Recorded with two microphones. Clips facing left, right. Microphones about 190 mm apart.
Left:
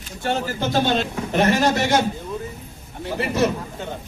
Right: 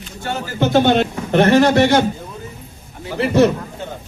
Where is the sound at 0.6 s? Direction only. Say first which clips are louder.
Right 9 dB; 60° right (ahead or behind).